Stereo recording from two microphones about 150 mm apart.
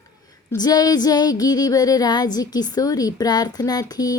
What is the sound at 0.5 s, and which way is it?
Speech, 25° left (ahead or behind).